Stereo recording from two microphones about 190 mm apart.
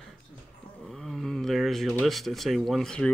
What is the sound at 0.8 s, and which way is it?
Speech, centre (ahead or behind).